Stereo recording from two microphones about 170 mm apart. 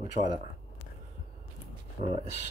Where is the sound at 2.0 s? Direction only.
35° right (ahead or behind).